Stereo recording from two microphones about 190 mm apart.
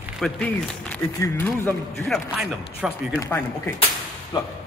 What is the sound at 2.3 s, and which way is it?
Speech, centre (ahead or behind).